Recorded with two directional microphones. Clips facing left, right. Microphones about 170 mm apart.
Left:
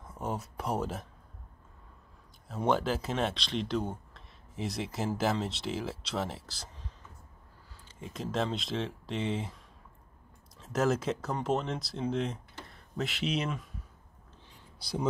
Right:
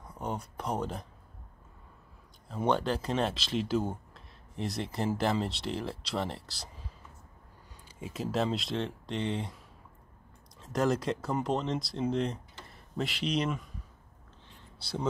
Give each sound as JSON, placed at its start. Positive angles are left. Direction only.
{"t": 0.0, "sound": "speech", "side_deg": 5}
{"t": 2.4, "sound": "speech", "side_deg": 5}
{"t": 8.0, "sound": "speech", "side_deg": -5}
{"t": 10.6, "sound": "speech", "side_deg": 5}